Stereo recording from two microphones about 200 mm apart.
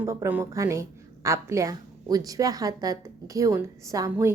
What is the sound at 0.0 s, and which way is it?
A woman's voice, 15° right (ahead or behind).